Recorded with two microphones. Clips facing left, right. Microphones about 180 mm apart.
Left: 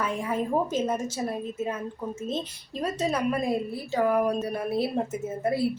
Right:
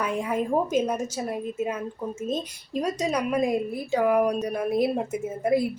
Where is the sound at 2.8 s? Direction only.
15° right (ahead or behind).